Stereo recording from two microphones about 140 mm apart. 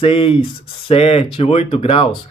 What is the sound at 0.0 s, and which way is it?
Speech, 40° left (ahead or behind).